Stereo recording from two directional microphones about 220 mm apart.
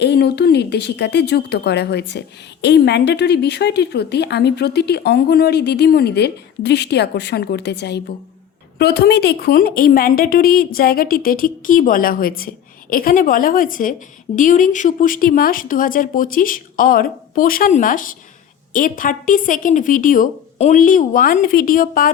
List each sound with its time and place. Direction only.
0.0 s speech: 50° left (ahead or behind)